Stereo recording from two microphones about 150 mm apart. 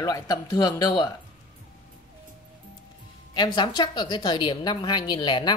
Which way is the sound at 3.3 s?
30° left (ahead or behind).